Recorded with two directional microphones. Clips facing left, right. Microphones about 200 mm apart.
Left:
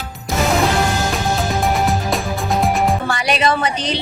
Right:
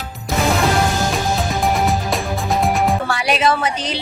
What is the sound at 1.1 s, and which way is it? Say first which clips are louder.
Music: left 1 dB; centre (ahead or behind).